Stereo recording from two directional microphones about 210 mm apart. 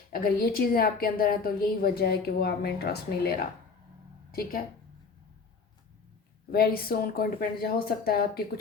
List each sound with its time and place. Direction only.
0.1 s a woman's voice: 45° left (ahead or behind)
6.5 s a woman's voice: 45° left (ahead or behind)